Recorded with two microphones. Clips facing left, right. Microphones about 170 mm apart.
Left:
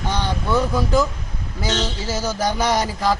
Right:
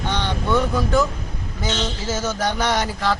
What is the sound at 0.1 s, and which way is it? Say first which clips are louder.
Vehicle: even; 10° left (ahead or behind).